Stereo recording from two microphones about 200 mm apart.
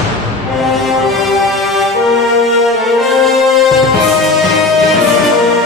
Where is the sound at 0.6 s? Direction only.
Centre (ahead or behind).